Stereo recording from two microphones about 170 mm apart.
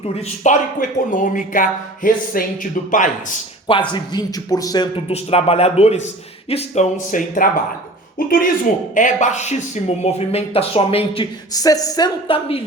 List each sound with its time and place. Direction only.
0.2 s speech: 50° left (ahead or behind)
3.9 s a man's voice: 25° left (ahead or behind)
5.0 s speech: 35° left (ahead or behind)
11.5 s a man's voice: 20° left (ahead or behind)